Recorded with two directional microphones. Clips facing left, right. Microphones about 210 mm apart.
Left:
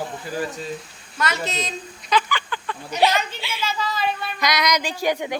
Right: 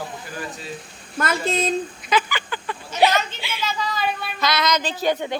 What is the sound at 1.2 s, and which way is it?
Speech, 55° right (ahead or behind).